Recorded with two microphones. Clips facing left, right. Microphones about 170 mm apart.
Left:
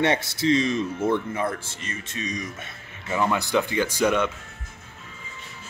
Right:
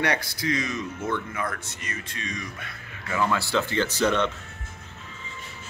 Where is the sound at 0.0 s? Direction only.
25° left (ahead or behind).